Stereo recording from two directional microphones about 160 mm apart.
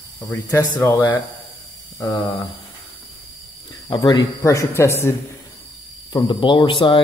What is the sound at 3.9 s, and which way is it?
Speech, 25° left (ahead or behind).